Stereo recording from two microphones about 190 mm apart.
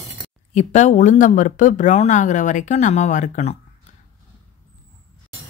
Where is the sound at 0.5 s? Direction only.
40° left (ahead or behind).